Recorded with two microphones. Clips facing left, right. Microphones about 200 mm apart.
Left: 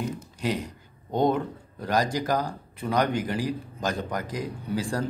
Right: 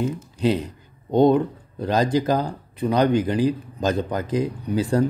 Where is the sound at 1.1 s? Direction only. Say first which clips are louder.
Right 7 dB; 20° right (ahead or behind).